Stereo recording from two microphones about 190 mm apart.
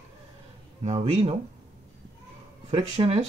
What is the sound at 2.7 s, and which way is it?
Speech, 30° right (ahead or behind).